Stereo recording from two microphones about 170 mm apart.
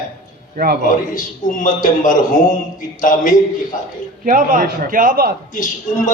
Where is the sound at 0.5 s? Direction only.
60° right (ahead or behind).